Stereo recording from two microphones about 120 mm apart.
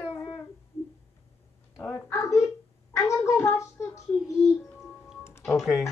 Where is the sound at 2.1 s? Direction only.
25° left (ahead or behind).